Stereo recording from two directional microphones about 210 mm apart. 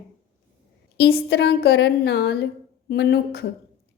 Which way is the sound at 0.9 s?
50° left (ahead or behind).